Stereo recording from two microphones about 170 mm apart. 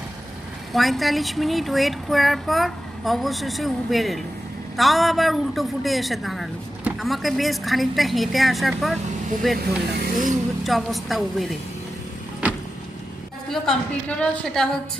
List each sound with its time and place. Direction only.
0.7 s a woman's voice: centre (ahead or behind)
9.9 s speech: 55° right (ahead or behind)
10.6 s a woman's voice: centre (ahead or behind)
13.5 s a woman's voice: 5° left (ahead or behind)